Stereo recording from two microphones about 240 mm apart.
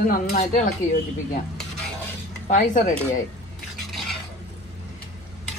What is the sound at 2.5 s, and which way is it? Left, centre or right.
Speech, left.